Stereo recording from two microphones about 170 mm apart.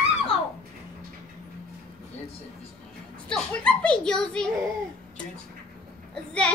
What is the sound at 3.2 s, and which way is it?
A woman's voice, 5° left (ahead or behind).